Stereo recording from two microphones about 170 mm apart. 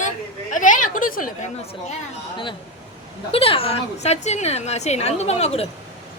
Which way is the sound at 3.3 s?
35° left (ahead or behind).